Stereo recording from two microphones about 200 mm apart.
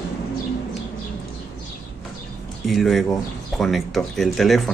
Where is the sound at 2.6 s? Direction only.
Centre (ahead or behind).